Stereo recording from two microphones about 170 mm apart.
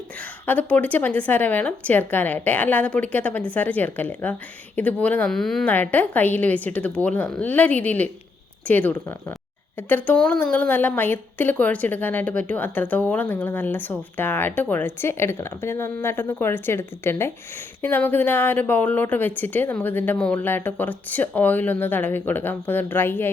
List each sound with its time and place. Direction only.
0.4 s speech: 10° left (ahead or behind)